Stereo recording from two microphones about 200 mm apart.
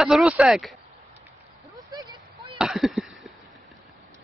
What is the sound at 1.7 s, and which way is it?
Chop, 20° right (ahead or behind).